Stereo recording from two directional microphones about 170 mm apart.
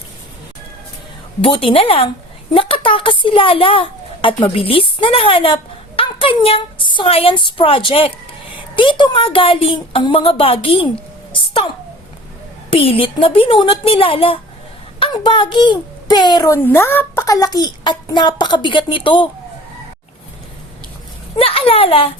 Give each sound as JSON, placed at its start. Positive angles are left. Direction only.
{"t": 1.4, "sound": "a child's voice", "side_deg": 30}
{"t": 11.3, "sound": "a sound", "side_deg": 30}
{"t": 12.7, "sound": "a child's voice", "side_deg": 35}
{"t": 21.3, "sound": "a child's voice", "side_deg": 35}